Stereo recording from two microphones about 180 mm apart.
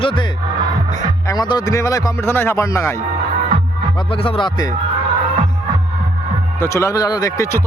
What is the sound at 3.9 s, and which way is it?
Speech, 30° left (ahead or behind).